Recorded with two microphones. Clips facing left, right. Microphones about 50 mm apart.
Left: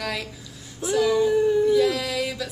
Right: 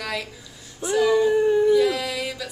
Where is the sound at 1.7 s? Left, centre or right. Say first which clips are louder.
Right 1 dB; centre.